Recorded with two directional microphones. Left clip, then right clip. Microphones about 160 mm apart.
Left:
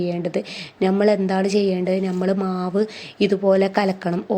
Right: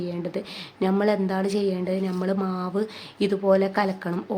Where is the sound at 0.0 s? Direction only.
25° left (ahead or behind).